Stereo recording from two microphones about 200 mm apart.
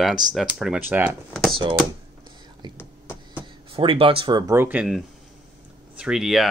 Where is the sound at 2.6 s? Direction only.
20° right (ahead or behind).